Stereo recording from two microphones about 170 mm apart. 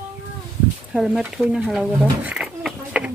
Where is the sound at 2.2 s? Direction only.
5° right (ahead or behind).